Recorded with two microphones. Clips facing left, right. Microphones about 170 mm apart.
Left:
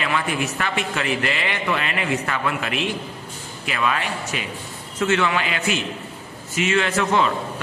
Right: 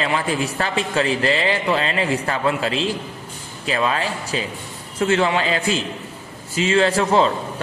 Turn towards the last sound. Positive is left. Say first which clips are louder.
# right 4 dB
turn(degrees=-30)  # may be behind; listen again after turning